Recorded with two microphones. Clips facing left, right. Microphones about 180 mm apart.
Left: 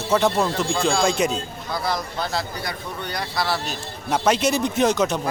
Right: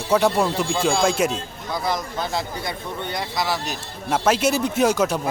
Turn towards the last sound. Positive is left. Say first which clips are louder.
# even
turn(degrees=-10)  # may be behind; listen again after turning